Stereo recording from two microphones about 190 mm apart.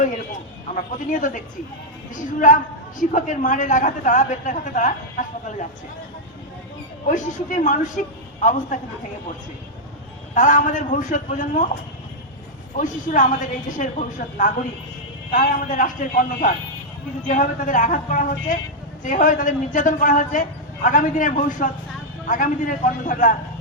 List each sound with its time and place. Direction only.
0.8 s a man's voice: 45° left (ahead or behind)
3.0 s a man's voice: 45° left (ahead or behind)
7.1 s a man's voice: 45° left (ahead or behind)
10.3 s a man's voice: 40° left (ahead or behind)
12.7 s a man's voice: 45° left (ahead or behind)